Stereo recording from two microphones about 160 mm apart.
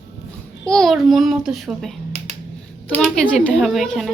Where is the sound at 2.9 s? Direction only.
10° left (ahead or behind).